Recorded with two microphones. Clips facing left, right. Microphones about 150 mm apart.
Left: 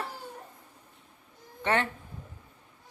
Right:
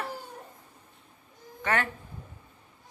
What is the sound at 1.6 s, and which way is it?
Speech, 25° left (ahead or behind).